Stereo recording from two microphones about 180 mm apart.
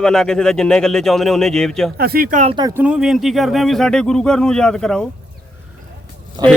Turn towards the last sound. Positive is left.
turn(degrees=-20)  # may be behind; listen again after turning